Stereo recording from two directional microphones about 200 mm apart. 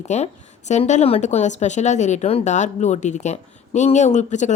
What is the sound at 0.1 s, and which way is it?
Speech, 35° left (ahead or behind).